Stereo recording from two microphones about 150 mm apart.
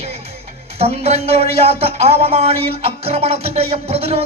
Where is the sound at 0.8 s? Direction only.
40° right (ahead or behind).